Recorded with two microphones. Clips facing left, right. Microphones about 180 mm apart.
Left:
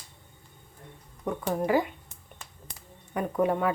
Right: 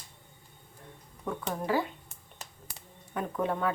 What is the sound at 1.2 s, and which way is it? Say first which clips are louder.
Speech: left 5 dB; 15° left (ahead or behind).